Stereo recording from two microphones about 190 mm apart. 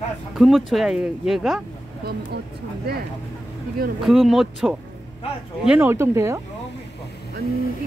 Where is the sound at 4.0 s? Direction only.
Centre (ahead or behind).